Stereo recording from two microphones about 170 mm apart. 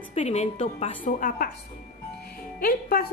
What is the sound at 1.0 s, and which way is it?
Speech, 50° left (ahead or behind).